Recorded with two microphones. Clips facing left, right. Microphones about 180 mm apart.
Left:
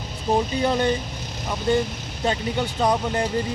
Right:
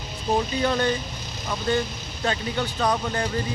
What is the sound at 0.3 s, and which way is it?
Speech, 15° left (ahead or behind).